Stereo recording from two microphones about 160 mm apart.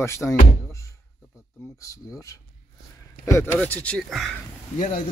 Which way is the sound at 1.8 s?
20° left (ahead or behind).